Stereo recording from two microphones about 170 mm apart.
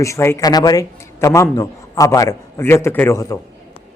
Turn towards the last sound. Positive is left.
turn(degrees=15)  # may be behind; listen again after turning